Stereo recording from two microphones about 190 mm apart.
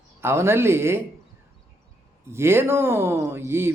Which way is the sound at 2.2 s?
15° right (ahead or behind).